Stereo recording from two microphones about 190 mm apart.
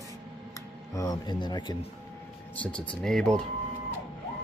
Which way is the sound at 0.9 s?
20° left (ahead or behind).